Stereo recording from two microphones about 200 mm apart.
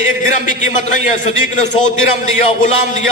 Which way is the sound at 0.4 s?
40° left (ahead or behind).